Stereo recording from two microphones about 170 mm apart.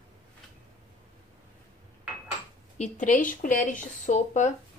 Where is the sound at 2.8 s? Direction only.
50° left (ahead or behind).